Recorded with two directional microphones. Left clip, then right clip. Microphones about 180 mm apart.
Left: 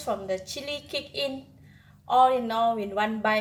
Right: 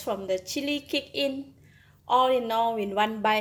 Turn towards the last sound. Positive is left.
turn(degrees=-45)  # may be behind; listen again after turning